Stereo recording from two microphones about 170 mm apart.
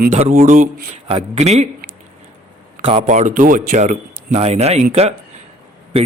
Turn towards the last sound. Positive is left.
turn(degrees=-35)  # may be behind; listen again after turning